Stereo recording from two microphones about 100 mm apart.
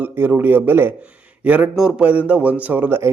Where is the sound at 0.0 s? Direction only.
20° right (ahead or behind).